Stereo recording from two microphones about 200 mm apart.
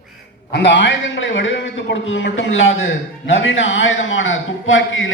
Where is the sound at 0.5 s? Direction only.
60° left (ahead or behind).